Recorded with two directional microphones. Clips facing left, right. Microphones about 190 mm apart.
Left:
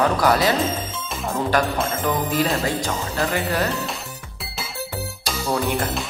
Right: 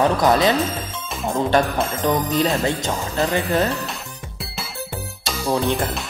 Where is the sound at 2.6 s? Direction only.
20° right (ahead or behind).